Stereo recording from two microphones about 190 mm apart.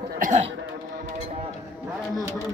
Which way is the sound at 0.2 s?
40° right (ahead or behind).